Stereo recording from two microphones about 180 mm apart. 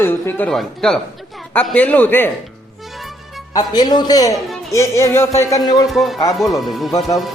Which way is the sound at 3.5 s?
20° left (ahead or behind).